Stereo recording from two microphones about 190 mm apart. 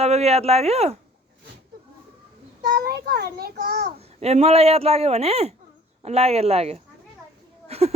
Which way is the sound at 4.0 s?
35° right (ahead or behind).